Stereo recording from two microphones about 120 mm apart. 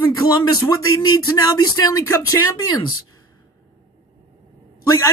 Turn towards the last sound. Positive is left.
turn(degrees=20)  # may be behind; listen again after turning